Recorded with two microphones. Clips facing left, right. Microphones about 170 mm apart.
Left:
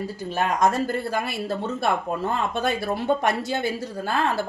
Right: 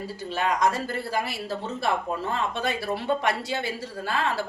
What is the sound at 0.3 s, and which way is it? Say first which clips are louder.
A woman's voice: left 2 dB; 50° left (ahead or behind).